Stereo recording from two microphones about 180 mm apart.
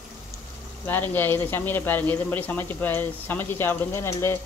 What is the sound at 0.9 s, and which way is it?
Speech, 10° left (ahead or behind).